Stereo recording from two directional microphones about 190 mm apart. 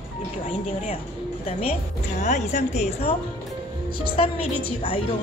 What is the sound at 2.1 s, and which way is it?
A woman's voice, 40° left (ahead or behind).